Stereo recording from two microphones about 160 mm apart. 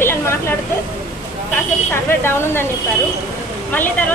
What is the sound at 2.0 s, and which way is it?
Speech, 15° left (ahead or behind).